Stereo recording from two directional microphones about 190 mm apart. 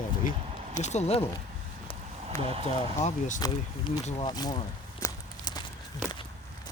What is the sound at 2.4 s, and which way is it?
Speech, 30° right (ahead or behind).